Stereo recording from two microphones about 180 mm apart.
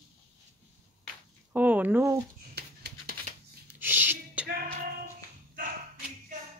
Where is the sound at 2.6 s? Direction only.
65° right (ahead or behind).